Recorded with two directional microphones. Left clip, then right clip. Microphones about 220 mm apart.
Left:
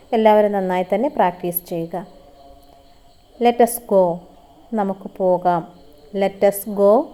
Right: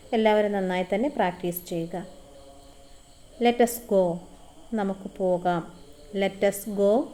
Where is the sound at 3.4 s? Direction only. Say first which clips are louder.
Left 7 dB; 20° left (ahead or behind).